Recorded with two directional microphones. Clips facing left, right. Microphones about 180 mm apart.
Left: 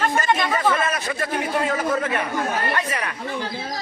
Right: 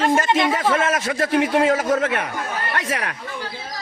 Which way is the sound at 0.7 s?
90° right.